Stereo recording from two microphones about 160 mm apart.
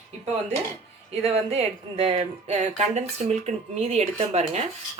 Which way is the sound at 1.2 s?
40° right (ahead or behind).